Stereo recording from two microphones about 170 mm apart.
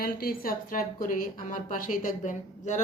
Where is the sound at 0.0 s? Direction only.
60° left (ahead or behind).